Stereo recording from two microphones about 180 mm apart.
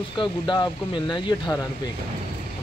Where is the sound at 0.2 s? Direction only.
25° left (ahead or behind).